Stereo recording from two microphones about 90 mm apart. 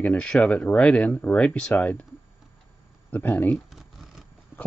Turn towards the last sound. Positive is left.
turn(degrees=0)  # may be behind; listen again after turning